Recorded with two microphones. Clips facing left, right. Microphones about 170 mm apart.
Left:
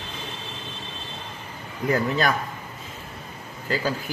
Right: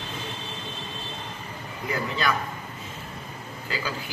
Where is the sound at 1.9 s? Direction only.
45° left (ahead or behind).